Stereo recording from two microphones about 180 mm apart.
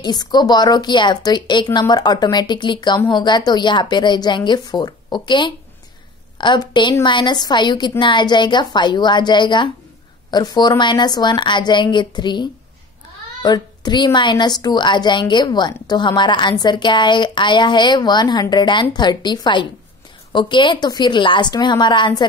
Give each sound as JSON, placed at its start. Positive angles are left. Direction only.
{"t": 0.0, "sound": "a woman's voice", "side_deg": 25}